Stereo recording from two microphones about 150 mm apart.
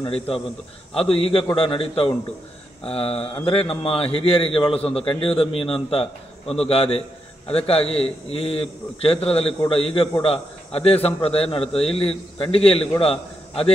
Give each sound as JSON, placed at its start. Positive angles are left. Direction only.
{"t": 0.0, "sound": "a man's voice", "side_deg": 40}